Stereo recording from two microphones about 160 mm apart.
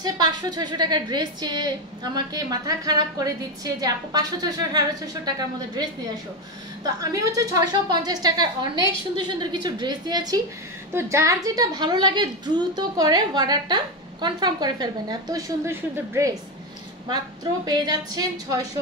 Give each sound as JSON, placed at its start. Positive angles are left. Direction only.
{"t": 0.0, "sound": "a woman's voice", "side_deg": -25}
{"t": 6.8, "sound": "a woman's voice", "side_deg": -20}
{"t": 17.6, "sound": "a woman's voice", "side_deg": -25}